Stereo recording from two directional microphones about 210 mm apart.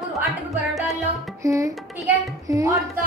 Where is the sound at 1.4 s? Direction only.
15° right (ahead or behind).